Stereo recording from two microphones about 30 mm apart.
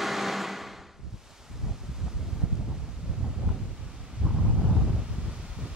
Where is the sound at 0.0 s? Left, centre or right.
Centre.